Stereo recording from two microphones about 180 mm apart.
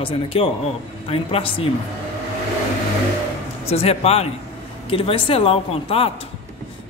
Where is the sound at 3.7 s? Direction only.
35° left (ahead or behind).